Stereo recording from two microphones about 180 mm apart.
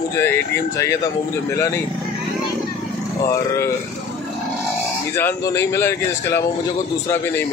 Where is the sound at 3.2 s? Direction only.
15° left (ahead or behind).